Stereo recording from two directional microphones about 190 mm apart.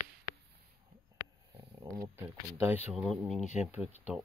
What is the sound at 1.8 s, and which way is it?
Speech, 15° right (ahead or behind).